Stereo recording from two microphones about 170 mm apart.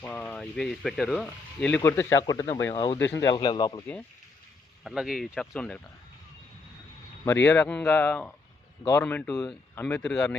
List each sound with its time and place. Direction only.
0.0 s speech: 10° left (ahead or behind)
2.7 s speech: 25° left (ahead or behind)
4.8 s speech: 5° right (ahead or behind)
7.3 s speech: 10° left (ahead or behind)